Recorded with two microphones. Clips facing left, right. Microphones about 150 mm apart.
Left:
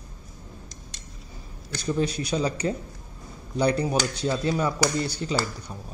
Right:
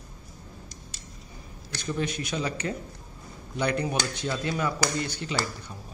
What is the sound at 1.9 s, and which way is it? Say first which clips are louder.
A man's voice: left 5 dB; 35° left (ahead or behind).